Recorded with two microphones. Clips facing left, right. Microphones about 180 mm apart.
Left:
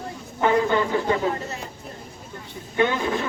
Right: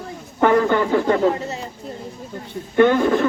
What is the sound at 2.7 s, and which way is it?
Speech, 55° right (ahead or behind).